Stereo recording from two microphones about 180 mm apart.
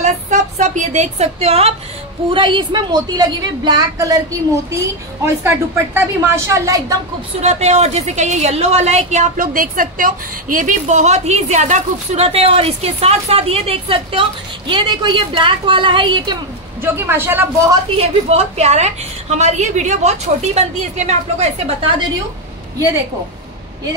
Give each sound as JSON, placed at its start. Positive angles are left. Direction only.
{"t": 0.0, "sound": "a sound", "side_deg": -40}
{"t": 2.3, "sound": "a woman's voice", "side_deg": -25}
{"t": 5.2, "sound": "a woman's voice", "side_deg": -15}
{"t": 7.4, "sound": "a woman's voice", "side_deg": -35}
{"t": 16.8, "sound": "a woman's voice", "side_deg": -15}
{"t": 17.9, "sound": "a woman's voice", "side_deg": -35}